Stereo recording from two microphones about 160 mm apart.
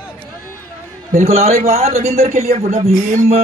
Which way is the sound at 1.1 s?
45° right (ahead or behind).